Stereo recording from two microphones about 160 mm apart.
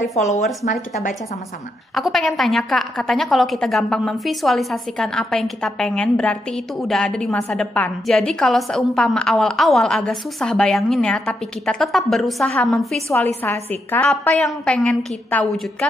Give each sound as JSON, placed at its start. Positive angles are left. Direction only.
{"t": 0.1, "sound": "speech", "side_deg": 45}
{"t": 2.0, "sound": "a woman's voice", "side_deg": 0}